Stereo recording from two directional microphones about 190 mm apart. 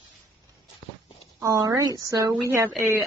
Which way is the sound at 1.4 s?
15° right (ahead or behind).